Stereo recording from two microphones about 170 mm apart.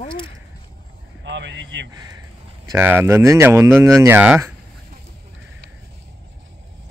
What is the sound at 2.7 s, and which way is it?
Speech, 15° right (ahead or behind).